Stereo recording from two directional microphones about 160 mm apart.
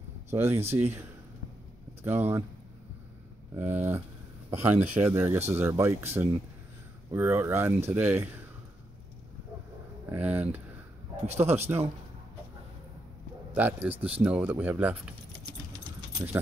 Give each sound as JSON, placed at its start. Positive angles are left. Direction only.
{"t": 0.3, "sound": "speech", "side_deg": -15}
{"t": 2.0, "sound": "speech", "side_deg": -15}
{"t": 3.5, "sound": "speech", "side_deg": -10}
{"t": 10.1, "sound": "speech", "side_deg": -10}
{"t": 13.6, "sound": "speech", "side_deg": -10}